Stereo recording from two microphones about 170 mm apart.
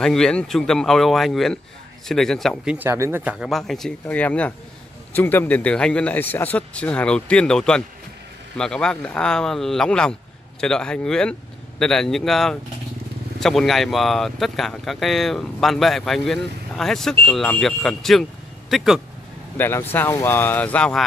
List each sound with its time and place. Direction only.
0.0 s speech: 5° left (ahead or behind)
19.5 s speech: 10° left (ahead or behind)